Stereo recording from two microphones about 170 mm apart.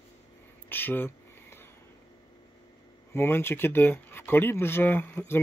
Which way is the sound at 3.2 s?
15° left (ahead or behind).